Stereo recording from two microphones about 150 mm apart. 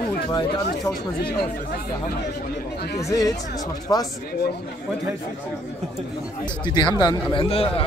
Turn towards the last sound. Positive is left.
turn(degrees=40)  # may be behind; listen again after turning